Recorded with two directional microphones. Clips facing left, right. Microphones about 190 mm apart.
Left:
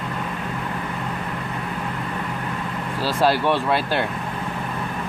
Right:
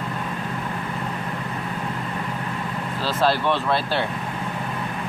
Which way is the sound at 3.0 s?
10° left (ahead or behind).